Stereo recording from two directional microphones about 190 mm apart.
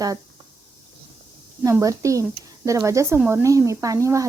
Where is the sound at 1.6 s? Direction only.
15° right (ahead or behind).